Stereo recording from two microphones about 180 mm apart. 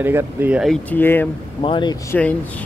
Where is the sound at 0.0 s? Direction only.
10° right (ahead or behind).